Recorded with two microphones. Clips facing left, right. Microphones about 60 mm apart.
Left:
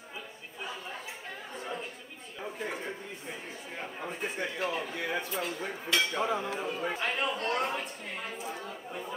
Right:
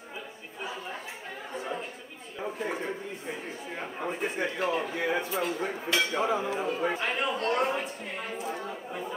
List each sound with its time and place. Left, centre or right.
1.5 s chatter: centre
2.6 s a sound: centre
3.7 s speech: centre
4.2 s speech: centre